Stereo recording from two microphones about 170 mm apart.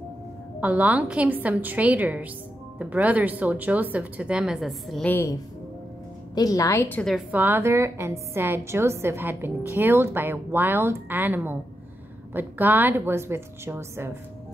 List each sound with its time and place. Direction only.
0.6 s a woman's voice: 10° right (ahead or behind)
5.1 s a woman's voice: 15° left (ahead or behind)
7.0 s a woman's voice: centre (ahead or behind)